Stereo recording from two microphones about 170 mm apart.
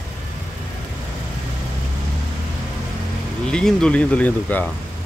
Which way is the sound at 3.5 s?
5° left (ahead or behind).